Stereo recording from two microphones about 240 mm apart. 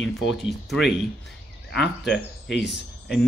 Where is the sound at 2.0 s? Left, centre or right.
Centre.